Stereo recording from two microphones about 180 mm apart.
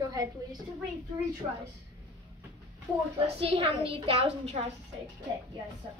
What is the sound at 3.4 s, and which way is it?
A woman's voice, 30° right (ahead or behind).